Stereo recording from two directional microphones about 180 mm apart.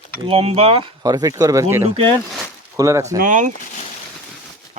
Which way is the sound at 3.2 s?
45° right (ahead or behind).